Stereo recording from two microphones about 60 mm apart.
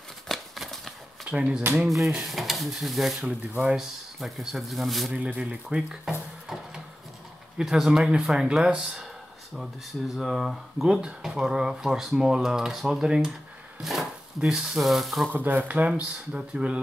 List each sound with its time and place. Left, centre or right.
0.3 s a sound: centre
1.2 s speech: centre
1.8 s speech: centre
5.4 s speech: centre
6.0 s a sound: centre
7.5 s speech: centre
9.6 s speech: centre
10.9 s speech: centre
15.3 s speech: right
16.3 s speech: centre